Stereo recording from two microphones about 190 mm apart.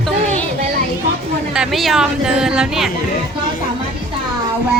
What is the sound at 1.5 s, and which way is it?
Speech, centre (ahead or behind).